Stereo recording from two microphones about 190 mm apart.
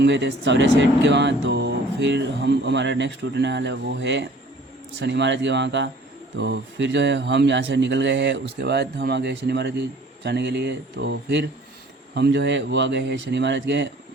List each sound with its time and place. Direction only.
0.0 s speech: 65° right (ahead or behind)